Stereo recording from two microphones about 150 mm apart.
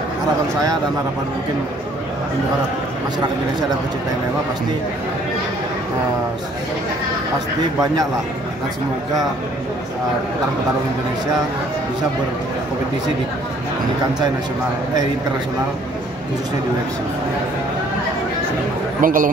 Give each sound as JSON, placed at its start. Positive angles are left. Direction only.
{"t": 18.9, "sound": "a man's voice", "side_deg": -65}